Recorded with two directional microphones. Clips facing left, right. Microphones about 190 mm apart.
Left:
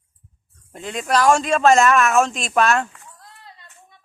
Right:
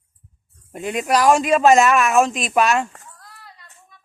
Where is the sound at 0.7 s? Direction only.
15° right (ahead or behind).